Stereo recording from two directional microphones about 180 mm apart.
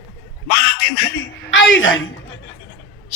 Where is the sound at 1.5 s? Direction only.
90° left.